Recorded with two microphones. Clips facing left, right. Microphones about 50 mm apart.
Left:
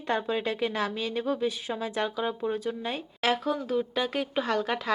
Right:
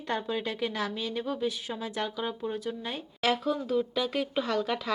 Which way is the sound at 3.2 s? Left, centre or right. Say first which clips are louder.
Left 1 dB; left.